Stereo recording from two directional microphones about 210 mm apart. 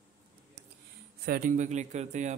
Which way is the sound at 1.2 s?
40° right (ahead or behind).